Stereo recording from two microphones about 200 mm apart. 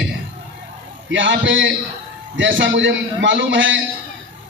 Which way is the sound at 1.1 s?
65° right (ahead or behind).